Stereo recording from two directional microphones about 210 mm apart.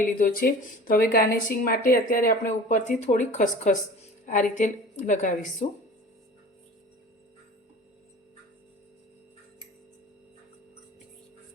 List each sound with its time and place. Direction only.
0.0 s a woman's voice: 40° left (ahead or behind)